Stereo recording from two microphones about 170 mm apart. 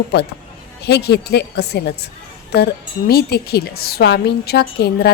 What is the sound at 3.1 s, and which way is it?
A woman's voice, 65° left (ahead or behind).